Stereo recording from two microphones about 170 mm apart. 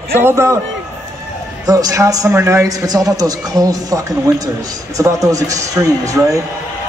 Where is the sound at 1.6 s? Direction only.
20° right (ahead or behind).